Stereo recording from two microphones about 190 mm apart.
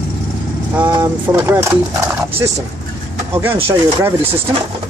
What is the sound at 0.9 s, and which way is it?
Speech, 10° right (ahead or behind).